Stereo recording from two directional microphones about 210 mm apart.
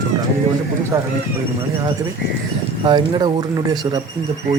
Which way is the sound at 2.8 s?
20° right (ahead or behind).